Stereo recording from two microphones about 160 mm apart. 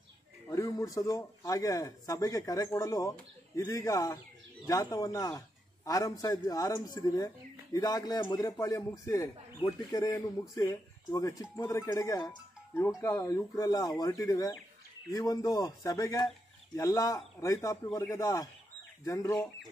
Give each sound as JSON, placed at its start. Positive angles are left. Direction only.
{"t": 0.5, "sound": "a man's voice", "side_deg": 20}